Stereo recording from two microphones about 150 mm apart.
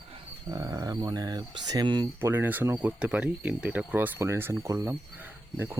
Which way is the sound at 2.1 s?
15° right (ahead or behind).